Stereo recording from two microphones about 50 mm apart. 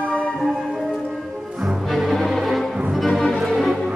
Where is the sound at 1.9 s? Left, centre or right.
Centre.